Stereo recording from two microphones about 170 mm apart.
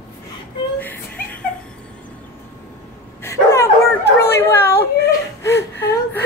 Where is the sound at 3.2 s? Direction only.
15° left (ahead or behind).